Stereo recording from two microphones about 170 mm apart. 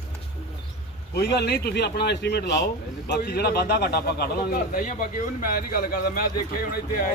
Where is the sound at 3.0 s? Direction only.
70° left (ahead or behind).